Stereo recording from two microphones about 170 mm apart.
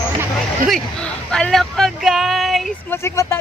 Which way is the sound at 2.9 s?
15° left (ahead or behind).